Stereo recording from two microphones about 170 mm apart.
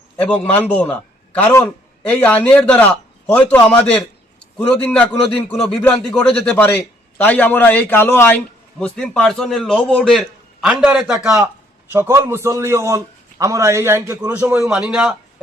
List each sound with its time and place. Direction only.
0.2 s a man's voice: 5° left (ahead or behind)
11.9 s a man's voice: 15° right (ahead or behind)